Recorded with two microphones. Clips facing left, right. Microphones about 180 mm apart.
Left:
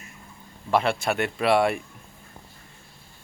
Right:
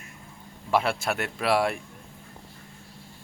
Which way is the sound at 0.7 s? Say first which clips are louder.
Left 2 dB; 5° right (ahead or behind).